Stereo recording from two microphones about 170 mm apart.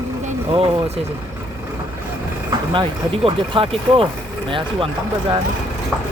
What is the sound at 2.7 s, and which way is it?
Speech, 30° right (ahead or behind).